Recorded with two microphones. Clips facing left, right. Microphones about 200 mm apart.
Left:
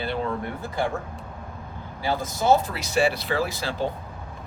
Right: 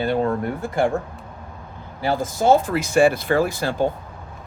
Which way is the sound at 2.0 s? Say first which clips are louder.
Right 4 dB; 50° right (ahead or behind).